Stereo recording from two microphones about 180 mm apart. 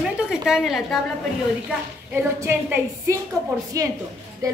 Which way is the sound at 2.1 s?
10° right (ahead or behind).